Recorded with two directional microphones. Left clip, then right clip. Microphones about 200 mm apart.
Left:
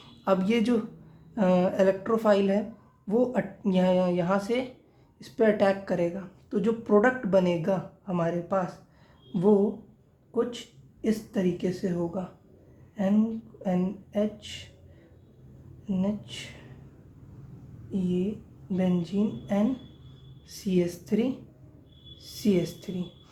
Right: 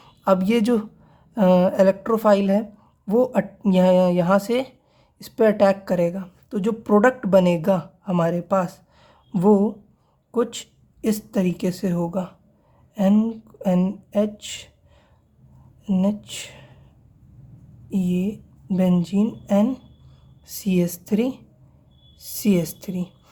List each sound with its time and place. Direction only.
0.0 s speech: 40° right (ahead or behind)
9.3 s a sound: 45° right (ahead or behind)
10.3 s speech: 45° right (ahead or behind)
15.9 s speech: 45° right (ahead or behind)
18.7 s speech: 45° right (ahead or behind)